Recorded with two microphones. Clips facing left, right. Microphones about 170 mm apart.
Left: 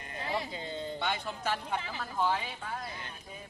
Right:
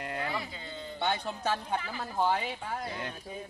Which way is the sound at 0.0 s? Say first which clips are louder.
Right 7 dB; 80° right.